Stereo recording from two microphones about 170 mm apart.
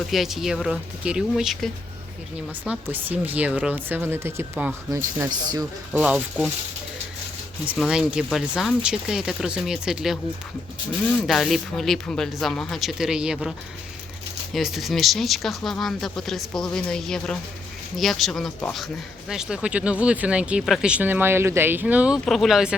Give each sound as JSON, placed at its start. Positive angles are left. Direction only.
{"t": 0.1, "sound": "speech", "side_deg": 0}
{"t": 2.9, "sound": "speech", "side_deg": -10}
{"t": 5.9, "sound": "speech", "side_deg": -10}
{"t": 7.7, "sound": "speech", "side_deg": -5}
{"t": 11.3, "sound": "speech", "side_deg": 0}
{"t": 14.5, "sound": "speech", "side_deg": 0}